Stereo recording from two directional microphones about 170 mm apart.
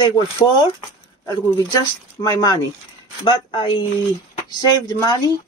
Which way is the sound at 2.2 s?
25° left (ahead or behind).